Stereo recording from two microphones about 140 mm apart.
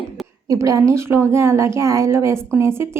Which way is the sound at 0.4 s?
25° right (ahead or behind).